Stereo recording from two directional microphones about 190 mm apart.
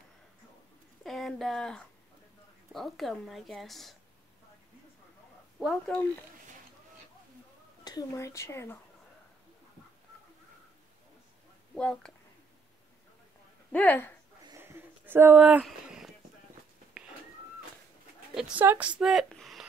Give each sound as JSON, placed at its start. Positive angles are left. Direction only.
{"t": 1.0, "sound": "a woman's voice", "side_deg": 0}
{"t": 5.6, "sound": "a woman's voice", "side_deg": 0}
{"t": 7.8, "sound": "speech", "side_deg": 20}
{"t": 11.7, "sound": "a woman's voice", "side_deg": 5}
{"t": 13.7, "sound": "speech", "side_deg": 10}
{"t": 14.4, "sound": "a sound", "side_deg": -15}
{"t": 18.3, "sound": "a woman's voice", "side_deg": -5}